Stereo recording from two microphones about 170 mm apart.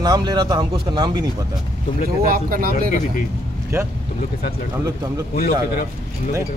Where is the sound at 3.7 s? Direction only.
15° right (ahead or behind).